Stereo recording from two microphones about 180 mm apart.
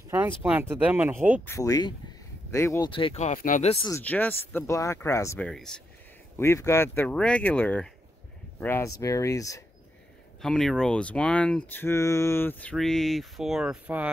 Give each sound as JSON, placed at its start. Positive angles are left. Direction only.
{"t": 0.4, "sound": "speech", "side_deg": -10}
{"t": 1.4, "sound": "speech", "side_deg": 15}
{"t": 2.9, "sound": "speech", "side_deg": 30}
{"t": 3.3, "sound": "speech", "side_deg": 45}
{"t": 3.9, "sound": "speech", "side_deg": 10}
{"t": 5.5, "sound": "speech", "side_deg": 5}
{"t": 6.3, "sound": "speech", "side_deg": 15}
{"t": 10.4, "sound": "speech", "side_deg": 0}